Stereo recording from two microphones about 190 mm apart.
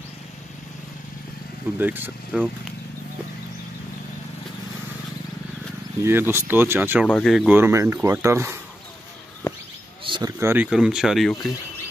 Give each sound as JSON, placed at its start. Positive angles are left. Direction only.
{"t": 1.8, "sound": "speech", "side_deg": -10}
{"t": 6.0, "sound": "speech", "side_deg": -10}
{"t": 7.1, "sound": "speech", "side_deg": 0}
{"t": 9.4, "sound": "a sound", "side_deg": 15}
{"t": 10.0, "sound": "a sound", "side_deg": -25}
{"t": 10.4, "sound": "speech", "side_deg": -10}